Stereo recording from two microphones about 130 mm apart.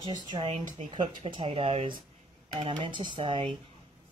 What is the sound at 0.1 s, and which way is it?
Speech, 35° right (ahead or behind).